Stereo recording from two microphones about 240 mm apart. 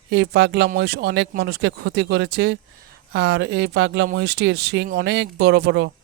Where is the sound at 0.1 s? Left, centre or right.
Right.